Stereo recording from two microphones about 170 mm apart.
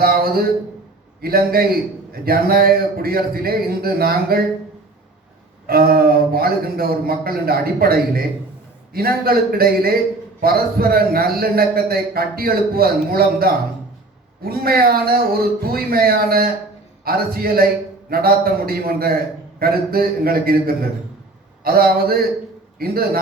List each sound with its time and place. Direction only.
0.0 s a man's voice: 60° right (ahead or behind)
5.6 s a man's voice: 65° right (ahead or behind)